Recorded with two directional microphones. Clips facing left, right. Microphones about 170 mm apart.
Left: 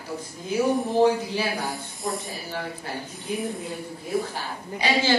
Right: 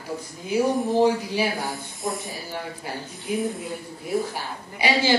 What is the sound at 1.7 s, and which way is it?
Speech, centre (ahead or behind).